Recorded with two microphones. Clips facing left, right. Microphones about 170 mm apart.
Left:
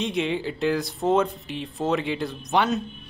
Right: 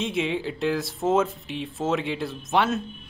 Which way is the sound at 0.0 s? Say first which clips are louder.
Left 1 dB; centre (ahead or behind).